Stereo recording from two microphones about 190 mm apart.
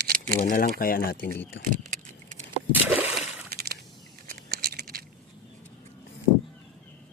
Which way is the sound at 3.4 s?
55° right (ahead or behind).